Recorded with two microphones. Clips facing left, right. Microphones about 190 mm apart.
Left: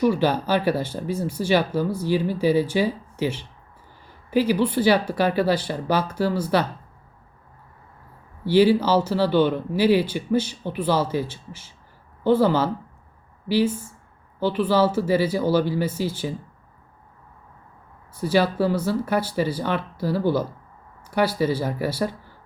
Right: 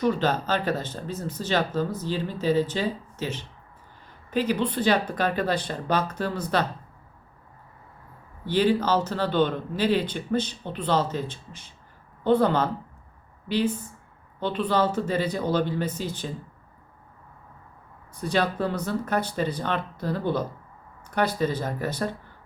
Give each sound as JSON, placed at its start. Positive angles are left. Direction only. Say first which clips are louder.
{"t": 0.0, "sound": "speech", "louder": "left 4 dB", "side_deg": 10}
{"t": 8.4, "sound": "speech", "louder": "left 5 dB", "side_deg": 10}
{"t": 18.1, "sound": "speech", "louder": "left 5 dB", "side_deg": 5}